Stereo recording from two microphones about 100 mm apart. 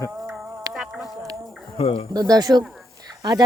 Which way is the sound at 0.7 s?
Centre (ahead or behind).